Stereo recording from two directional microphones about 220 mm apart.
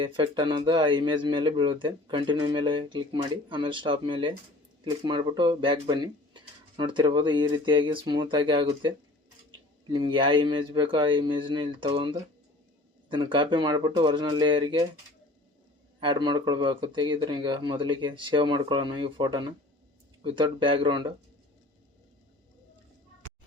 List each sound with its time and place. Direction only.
0.0 s speech: 20° right (ahead or behind)
16.0 s speech: 20° right (ahead or behind)